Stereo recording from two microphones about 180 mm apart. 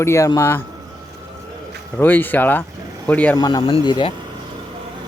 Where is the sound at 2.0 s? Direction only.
10° left (ahead or behind).